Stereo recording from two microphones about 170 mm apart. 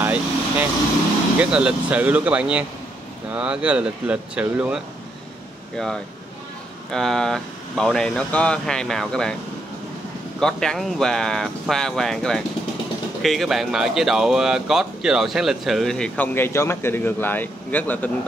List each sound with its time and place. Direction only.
0.0 s vehicle: 10° right (ahead or behind)
1.4 s speech: 5° right (ahead or behind)
6.9 s speech: 5° left (ahead or behind)
10.4 s speech: 5° left (ahead or behind)